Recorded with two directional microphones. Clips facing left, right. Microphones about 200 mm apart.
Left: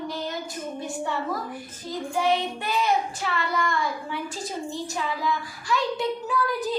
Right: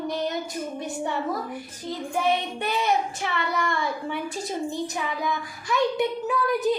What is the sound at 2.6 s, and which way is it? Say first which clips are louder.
Child singing: even; 20° right (ahead or behind).